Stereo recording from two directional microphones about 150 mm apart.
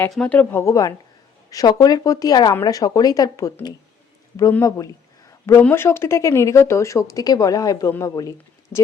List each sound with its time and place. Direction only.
0.1 s speech: 10° left (ahead or behind)